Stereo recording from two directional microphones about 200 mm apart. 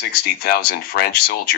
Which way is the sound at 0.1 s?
50° left (ahead or behind).